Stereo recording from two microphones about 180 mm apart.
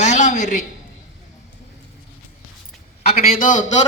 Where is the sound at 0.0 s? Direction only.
40° left (ahead or behind).